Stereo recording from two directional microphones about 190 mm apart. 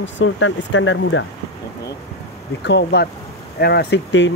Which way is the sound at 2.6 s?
65° left (ahead or behind).